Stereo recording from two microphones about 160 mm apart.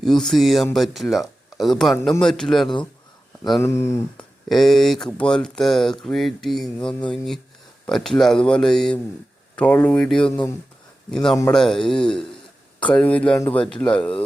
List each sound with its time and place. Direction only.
0.0 s speech: centre (ahead or behind)
3.6 s speech: 15° left (ahead or behind)
4.4 s speech: centre (ahead or behind)